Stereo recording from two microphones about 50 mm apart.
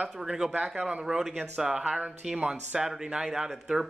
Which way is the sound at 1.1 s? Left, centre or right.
Centre.